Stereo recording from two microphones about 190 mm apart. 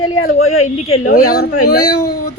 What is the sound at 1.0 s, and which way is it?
Speech, 50° left (ahead or behind).